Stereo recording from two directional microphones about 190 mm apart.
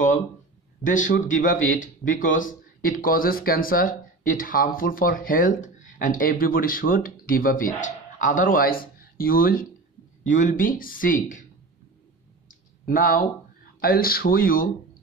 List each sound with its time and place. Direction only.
0.8 s a man's voice: 45° left (ahead or behind)
12.8 s a man's voice: 50° left (ahead or behind)